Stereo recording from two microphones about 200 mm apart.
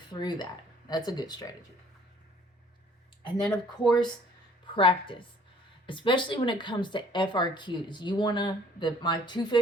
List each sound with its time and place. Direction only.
0.1 s speech: 20° left (ahead or behind)
3.8 s speech: 20° left (ahead or behind)